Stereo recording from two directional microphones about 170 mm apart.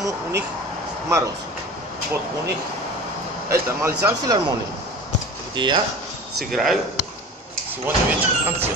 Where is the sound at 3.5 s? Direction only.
15° right (ahead or behind).